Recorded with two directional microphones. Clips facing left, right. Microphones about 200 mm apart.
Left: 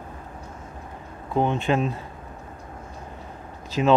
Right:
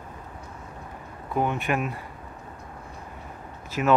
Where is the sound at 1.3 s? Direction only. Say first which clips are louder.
Left 3 dB; 25° left (ahead or behind).